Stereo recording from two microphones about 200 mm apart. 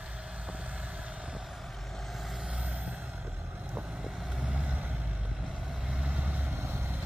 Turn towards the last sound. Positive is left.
turn(degrees=-10)  # may be behind; listen again after turning